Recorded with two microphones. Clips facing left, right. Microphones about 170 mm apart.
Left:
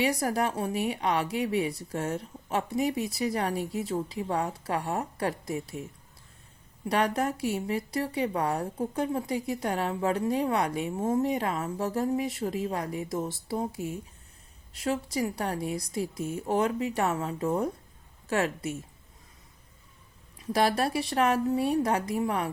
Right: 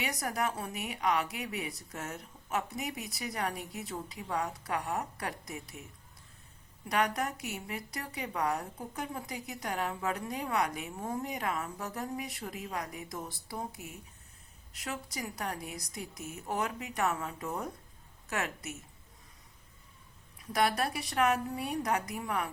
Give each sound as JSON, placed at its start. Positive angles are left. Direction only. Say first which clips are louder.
{"t": 0.0, "sound": "speech", "louder": "left 7 dB", "side_deg": 30}
{"t": 6.8, "sound": "speech", "louder": "left 5 dB", "side_deg": 30}
{"t": 20.4, "sound": "speech", "louder": "left 5 dB", "side_deg": 30}